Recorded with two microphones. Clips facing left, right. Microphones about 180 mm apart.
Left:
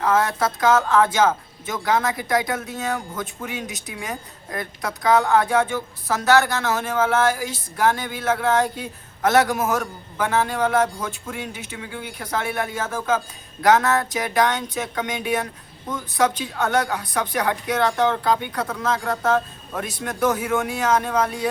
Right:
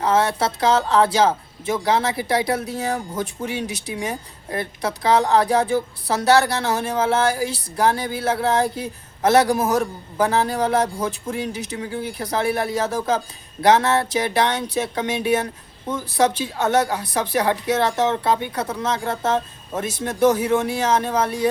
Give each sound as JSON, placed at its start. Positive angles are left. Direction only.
{"t": 0.0, "sound": "speech", "side_deg": -30}